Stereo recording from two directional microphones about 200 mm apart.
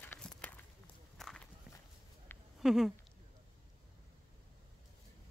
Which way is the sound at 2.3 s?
10° left (ahead or behind).